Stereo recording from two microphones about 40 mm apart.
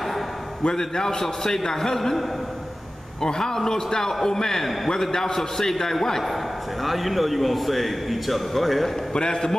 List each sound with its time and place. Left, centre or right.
0.7 s a man's voice: centre
9.1 s a man's voice: centre